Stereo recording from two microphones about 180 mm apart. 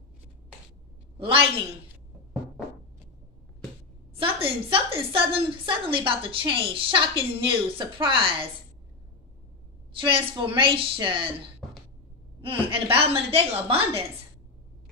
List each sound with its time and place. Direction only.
1.2 s a woman's voice: 30° right (ahead or behind)
4.1 s a woman's voice: 30° right (ahead or behind)
9.9 s a woman's voice: 30° right (ahead or behind)
12.4 s a woman's voice: 30° right (ahead or behind)